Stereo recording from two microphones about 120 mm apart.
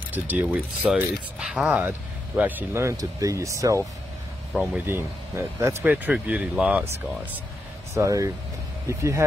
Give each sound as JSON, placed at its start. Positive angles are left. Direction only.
{"t": 0.1, "sound": "speech", "side_deg": -15}
{"t": 7.9, "sound": "speech", "side_deg": -25}